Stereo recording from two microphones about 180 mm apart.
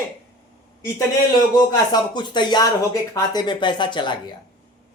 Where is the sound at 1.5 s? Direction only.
25° left (ahead or behind).